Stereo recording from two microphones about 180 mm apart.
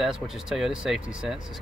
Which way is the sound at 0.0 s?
Centre (ahead or behind).